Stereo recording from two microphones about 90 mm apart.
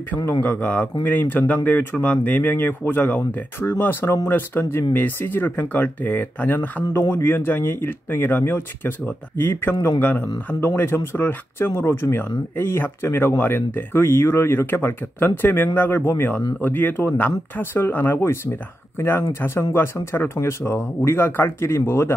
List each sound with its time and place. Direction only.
0.4 s speech: 15° left (ahead or behind)